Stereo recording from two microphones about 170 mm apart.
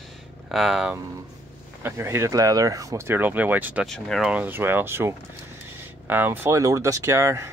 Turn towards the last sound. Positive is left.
turn(degrees=-15)  # may be behind; listen again after turning